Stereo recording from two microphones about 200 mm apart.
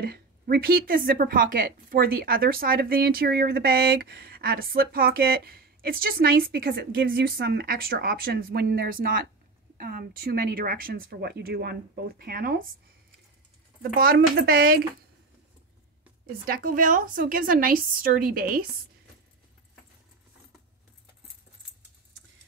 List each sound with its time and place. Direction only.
0.0 s a woman's voice: 50° right (ahead or behind)
13.9 s a woman's voice: 50° right (ahead or behind)
16.4 s a woman's voice: 45° right (ahead or behind)